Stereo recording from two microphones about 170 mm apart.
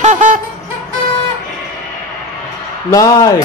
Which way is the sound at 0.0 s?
45° right (ahead or behind).